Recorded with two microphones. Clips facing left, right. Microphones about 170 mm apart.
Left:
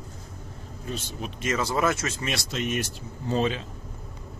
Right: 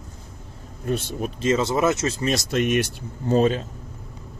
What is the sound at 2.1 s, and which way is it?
Speech, 40° right (ahead or behind).